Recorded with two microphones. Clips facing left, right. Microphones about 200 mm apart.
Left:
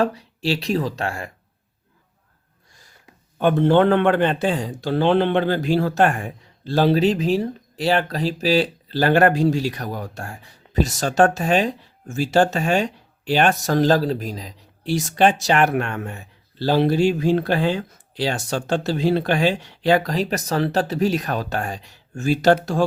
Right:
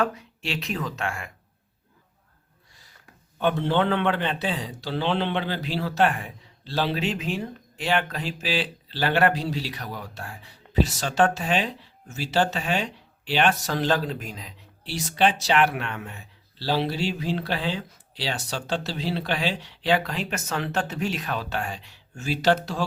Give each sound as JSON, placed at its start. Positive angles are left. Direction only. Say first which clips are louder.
{"t": 0.0, "sound": "speech", "louder": "left 5 dB", "side_deg": 35}
{"t": 3.3, "sound": "a man's voice", "louder": "left 7 dB", "side_deg": 50}
{"t": 14.8, "sound": "a man's voice", "louder": "left 5 dB", "side_deg": 45}